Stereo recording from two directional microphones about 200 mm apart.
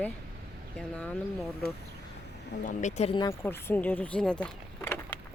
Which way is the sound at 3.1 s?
15° left (ahead or behind).